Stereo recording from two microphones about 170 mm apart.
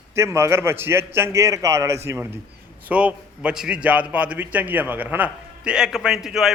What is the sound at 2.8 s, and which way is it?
A man's voice, 10° right (ahead or behind).